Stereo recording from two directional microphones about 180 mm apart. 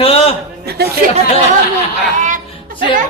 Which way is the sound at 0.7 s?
60° right (ahead or behind).